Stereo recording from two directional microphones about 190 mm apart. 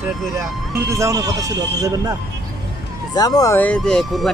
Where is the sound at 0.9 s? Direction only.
15° right (ahead or behind).